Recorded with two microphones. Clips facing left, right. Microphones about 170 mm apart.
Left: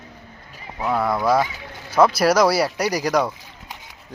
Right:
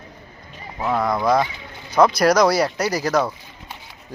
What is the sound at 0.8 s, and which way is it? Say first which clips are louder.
Speech: even; 5° left (ahead or behind).